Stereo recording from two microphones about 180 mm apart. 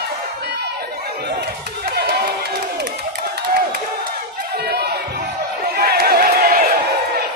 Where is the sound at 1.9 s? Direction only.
65° right (ahead or behind).